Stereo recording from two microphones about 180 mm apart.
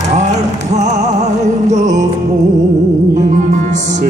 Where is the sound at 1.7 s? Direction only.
40° right (ahead or behind).